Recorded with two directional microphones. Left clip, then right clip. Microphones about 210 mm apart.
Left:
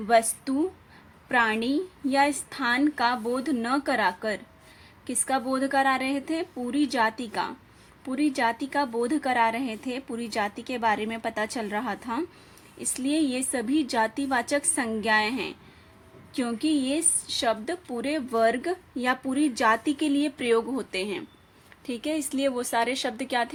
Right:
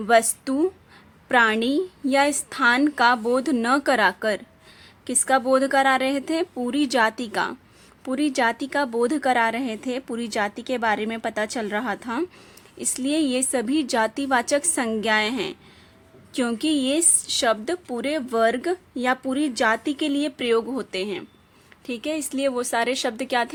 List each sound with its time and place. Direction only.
0.0 s a woman's voice: 30° right (ahead or behind)